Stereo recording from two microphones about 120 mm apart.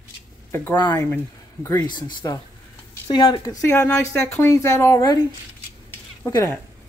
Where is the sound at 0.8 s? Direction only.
35° left (ahead or behind).